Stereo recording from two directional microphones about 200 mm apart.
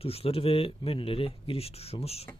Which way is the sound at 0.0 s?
30° left (ahead or behind).